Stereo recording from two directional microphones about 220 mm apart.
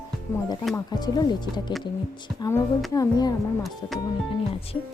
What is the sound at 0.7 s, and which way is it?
A woman's voice, 15° left (ahead or behind).